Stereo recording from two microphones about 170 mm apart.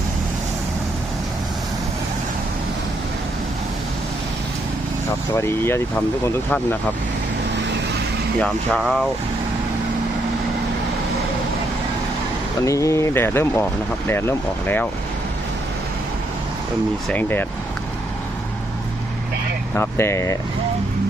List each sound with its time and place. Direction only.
5.4 s speech: 15° left (ahead or behind)
8.4 s speech: centre (ahead or behind)
12.6 s speech: 20° left (ahead or behind)
17.1 s speech: 10° left (ahead or behind)
19.7 s speech: 15° left (ahead or behind)